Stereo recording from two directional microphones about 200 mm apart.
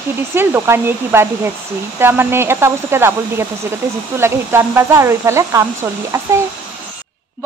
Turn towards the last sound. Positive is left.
turn(degrees=-15)  # may be behind; listen again after turning